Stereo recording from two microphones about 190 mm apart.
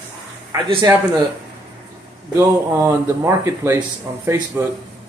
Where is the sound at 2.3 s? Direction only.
15° right (ahead or behind).